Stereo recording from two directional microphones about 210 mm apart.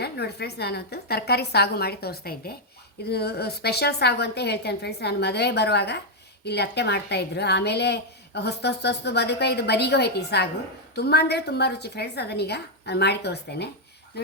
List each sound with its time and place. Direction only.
0.0 s a woman's voice: 50° left (ahead or behind)